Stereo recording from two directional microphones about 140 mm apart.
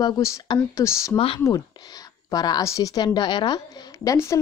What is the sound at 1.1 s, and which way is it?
Speech, 40° left (ahead or behind).